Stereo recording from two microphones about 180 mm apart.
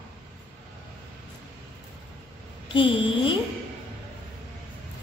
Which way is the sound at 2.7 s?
30° left (ahead or behind).